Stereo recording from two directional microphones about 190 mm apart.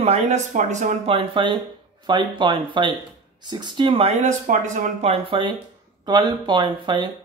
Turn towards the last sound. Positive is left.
turn(degrees=-25)  # may be behind; listen again after turning